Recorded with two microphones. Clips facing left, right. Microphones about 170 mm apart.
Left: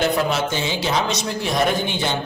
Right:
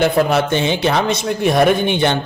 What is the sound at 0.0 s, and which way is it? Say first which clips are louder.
Speech: right 5 dB; 60° right (ahead or behind).